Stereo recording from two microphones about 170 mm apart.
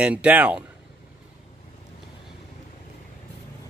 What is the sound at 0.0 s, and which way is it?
Speech, 5° right (ahead or behind).